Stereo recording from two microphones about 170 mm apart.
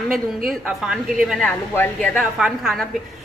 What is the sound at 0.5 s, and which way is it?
A woman's voice, 5° right (ahead or behind).